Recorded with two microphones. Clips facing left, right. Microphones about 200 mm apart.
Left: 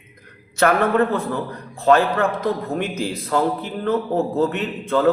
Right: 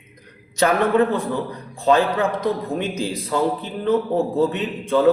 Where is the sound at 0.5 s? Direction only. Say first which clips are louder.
Even; 15° right (ahead or behind).